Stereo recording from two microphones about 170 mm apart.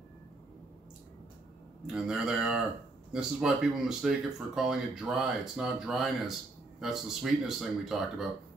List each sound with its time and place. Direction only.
2.0 s speech: 5° right (ahead or behind)